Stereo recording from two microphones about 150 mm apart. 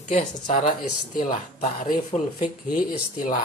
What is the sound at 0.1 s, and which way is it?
Speech, 55° left (ahead or behind).